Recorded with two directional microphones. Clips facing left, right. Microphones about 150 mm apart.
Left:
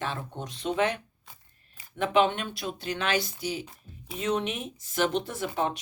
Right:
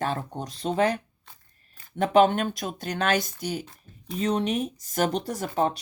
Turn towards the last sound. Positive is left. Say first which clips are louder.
# right 4 dB
turn(degrees=-40)  # may be behind; listen again after turning